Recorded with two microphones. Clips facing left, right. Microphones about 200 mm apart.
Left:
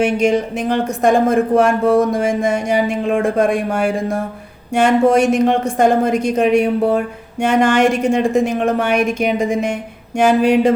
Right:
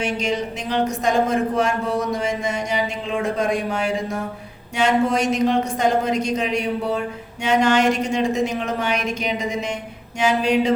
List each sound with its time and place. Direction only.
0.0 s a woman's voice: 50° left (ahead or behind)